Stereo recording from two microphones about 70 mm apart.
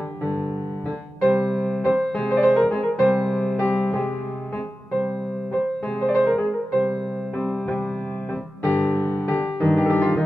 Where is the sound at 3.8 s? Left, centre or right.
Centre.